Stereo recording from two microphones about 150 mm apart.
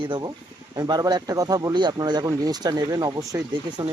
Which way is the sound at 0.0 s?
30° right (ahead or behind).